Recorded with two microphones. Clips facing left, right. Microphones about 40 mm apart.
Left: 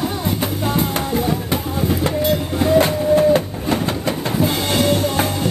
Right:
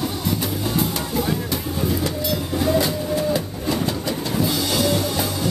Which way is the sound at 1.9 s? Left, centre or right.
Left.